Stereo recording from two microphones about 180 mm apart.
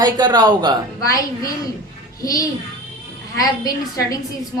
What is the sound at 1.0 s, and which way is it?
Speech, 20° left (ahead or behind).